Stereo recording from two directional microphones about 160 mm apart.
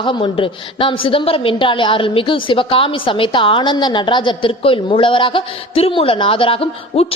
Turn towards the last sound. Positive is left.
turn(degrees=40)  # may be behind; listen again after turning